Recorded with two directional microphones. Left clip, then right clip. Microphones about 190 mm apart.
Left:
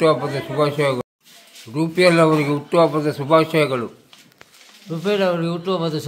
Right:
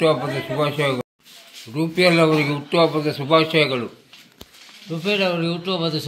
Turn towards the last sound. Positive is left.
turn(degrees=15)  # may be behind; listen again after turning